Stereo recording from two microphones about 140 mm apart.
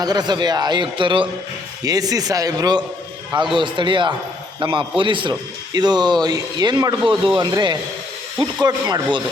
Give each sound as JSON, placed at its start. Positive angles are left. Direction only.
{"t": 0.0, "sound": "a man's voice", "side_deg": -30}